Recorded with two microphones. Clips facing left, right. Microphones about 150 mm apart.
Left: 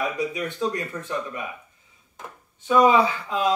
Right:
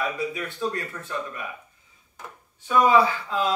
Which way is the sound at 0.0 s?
20° left (ahead or behind).